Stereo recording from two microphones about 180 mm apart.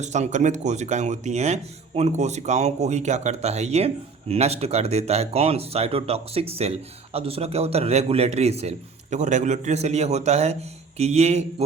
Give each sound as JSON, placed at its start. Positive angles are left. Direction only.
{"t": 0.0, "sound": "speech", "side_deg": -40}